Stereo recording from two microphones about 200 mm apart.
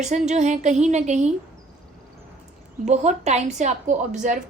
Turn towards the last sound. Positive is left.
turn(degrees=-40)  # may be behind; listen again after turning